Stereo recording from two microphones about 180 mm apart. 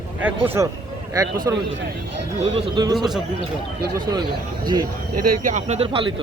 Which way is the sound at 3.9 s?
20° right (ahead or behind).